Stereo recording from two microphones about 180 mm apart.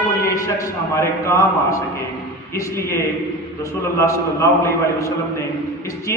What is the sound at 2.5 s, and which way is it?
Speech, 15° left (ahead or behind).